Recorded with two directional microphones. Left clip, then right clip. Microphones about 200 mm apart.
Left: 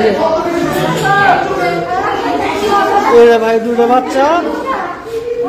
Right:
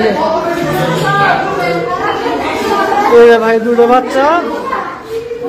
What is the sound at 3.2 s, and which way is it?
Speech, 10° left (ahead or behind).